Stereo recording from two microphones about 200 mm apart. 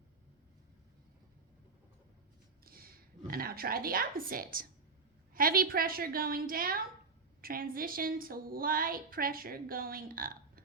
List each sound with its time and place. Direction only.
2.6 s a woman's voice: 45° right (ahead or behind)